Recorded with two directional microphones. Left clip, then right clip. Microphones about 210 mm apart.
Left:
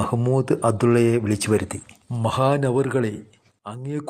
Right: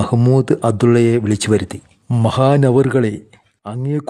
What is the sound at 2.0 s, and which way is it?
Speech, 45° right (ahead or behind).